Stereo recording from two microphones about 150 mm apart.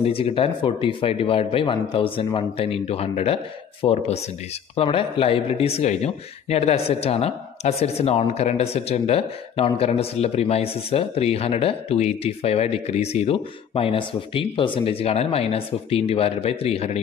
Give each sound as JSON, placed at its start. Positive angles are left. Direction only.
{"t": 0.0, "sound": "speech", "side_deg": 40}